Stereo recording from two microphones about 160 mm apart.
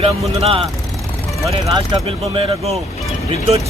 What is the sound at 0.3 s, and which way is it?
Speech, 40° right (ahead or behind).